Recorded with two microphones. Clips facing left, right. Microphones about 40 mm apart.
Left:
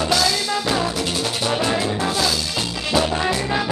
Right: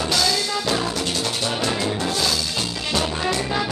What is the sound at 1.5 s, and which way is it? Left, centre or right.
Music, centre.